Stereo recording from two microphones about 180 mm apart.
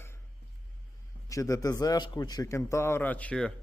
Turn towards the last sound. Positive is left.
turn(degrees=5)  # may be behind; listen again after turning